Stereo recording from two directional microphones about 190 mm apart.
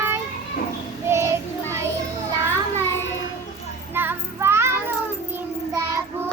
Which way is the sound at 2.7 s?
10° left (ahead or behind).